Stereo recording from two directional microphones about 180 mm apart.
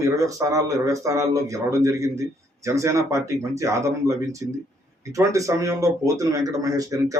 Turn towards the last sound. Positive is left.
turn(degrees=-15)  # may be behind; listen again after turning